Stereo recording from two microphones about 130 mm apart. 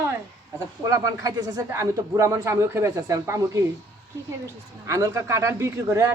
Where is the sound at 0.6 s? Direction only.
25° right (ahead or behind).